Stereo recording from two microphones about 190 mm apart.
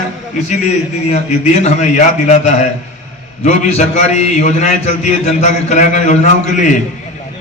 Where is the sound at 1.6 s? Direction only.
40° left (ahead or behind).